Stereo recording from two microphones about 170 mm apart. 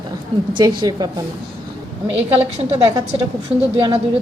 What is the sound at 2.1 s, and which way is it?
A woman's voice, 35° right (ahead or behind).